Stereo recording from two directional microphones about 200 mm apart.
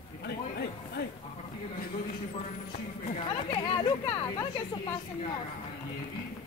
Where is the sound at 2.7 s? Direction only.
30° left (ahead or behind).